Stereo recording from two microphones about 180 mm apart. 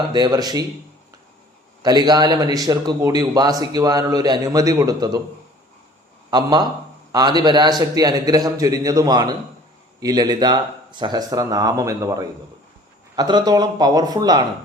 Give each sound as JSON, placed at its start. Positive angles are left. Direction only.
{"t": 0.0, "sound": "a man's voice", "side_deg": -25}
{"t": 1.8, "sound": "a man's voice", "side_deg": -25}
{"t": 6.3, "sound": "a man's voice", "side_deg": -25}